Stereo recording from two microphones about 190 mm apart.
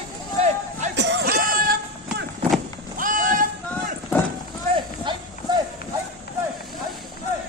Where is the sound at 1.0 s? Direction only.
65° right (ahead or behind).